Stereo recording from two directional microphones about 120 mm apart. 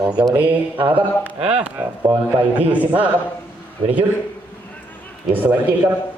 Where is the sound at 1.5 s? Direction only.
10° right (ahead or behind).